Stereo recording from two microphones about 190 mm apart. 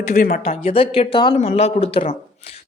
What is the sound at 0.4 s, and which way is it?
Speech, 30° left (ahead or behind).